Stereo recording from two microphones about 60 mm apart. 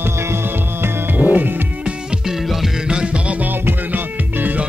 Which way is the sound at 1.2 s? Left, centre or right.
Right.